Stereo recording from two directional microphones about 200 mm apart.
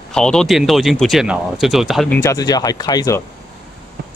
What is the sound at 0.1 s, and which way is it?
Speech, 5° left (ahead or behind).